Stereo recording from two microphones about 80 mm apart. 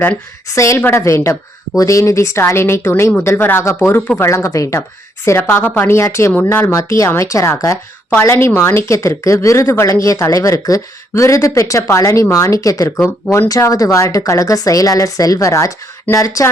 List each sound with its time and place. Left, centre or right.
0.4 s speech: left
0.8 s speech: left
1.7 s speech: left
5.2 s speech: left
5.9 s speech: left
6.7 s a woman's voice: left